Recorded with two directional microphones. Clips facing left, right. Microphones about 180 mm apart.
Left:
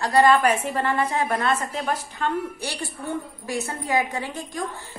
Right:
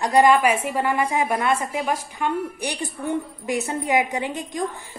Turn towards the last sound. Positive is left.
turn(degrees=-20)  # may be behind; listen again after turning